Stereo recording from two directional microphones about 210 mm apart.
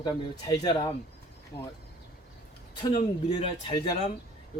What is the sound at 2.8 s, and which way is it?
Speech, 25° left (ahead or behind).